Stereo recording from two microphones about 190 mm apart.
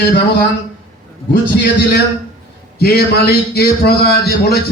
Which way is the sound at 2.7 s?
55° left (ahead or behind).